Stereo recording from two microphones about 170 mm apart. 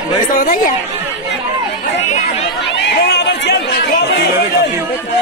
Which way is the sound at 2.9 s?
80° left.